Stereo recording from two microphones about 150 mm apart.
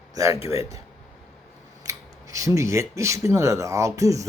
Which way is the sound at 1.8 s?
20° right (ahead or behind).